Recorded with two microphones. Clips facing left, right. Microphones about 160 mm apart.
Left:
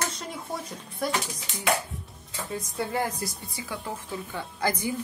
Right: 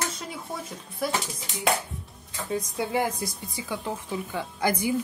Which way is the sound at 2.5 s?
15° right (ahead or behind).